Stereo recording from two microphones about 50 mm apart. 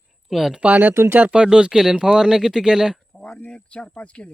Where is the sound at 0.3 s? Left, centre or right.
Centre.